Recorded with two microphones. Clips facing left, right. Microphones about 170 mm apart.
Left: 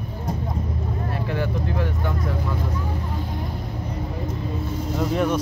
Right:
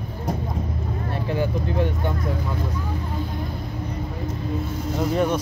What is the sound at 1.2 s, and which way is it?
Speech, 20° right (ahead or behind).